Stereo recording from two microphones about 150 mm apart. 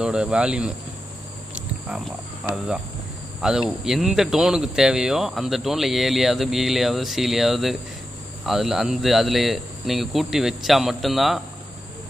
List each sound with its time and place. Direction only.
0.0 s speech: 5° right (ahead or behind)
1.5 s cricket: 5° right (ahead or behind)
2.5 s speech: 5° right (ahead or behind)